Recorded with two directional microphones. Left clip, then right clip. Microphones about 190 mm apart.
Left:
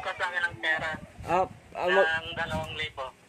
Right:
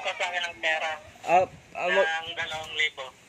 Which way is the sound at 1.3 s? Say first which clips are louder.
Right 5 dB; 15° left (ahead or behind).